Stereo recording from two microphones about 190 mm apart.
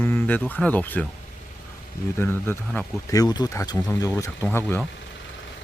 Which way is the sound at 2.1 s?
10° left (ahead or behind).